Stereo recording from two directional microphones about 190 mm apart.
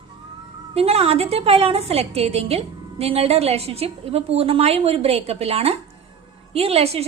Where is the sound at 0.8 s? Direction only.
30° right (ahead or behind).